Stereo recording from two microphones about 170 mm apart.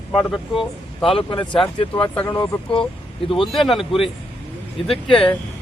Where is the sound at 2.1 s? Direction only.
10° left (ahead or behind).